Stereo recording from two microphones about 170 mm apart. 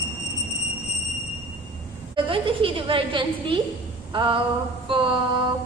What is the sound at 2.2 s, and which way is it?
A woman's voice, 30° right (ahead or behind).